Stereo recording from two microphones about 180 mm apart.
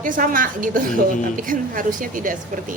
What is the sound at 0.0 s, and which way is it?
A woman's voice, 50° right (ahead or behind).